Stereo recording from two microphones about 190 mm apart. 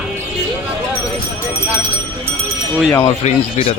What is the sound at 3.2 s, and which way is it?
Speech, 30° left (ahead or behind).